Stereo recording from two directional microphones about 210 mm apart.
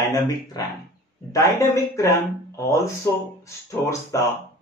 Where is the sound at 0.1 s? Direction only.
20° left (ahead or behind).